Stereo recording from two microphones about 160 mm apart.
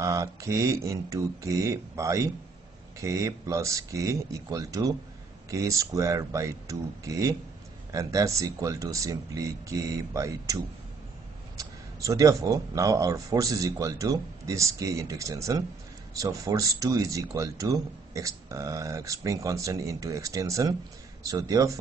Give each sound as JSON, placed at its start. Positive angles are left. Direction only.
{"t": 0.0, "sound": "speech", "side_deg": -20}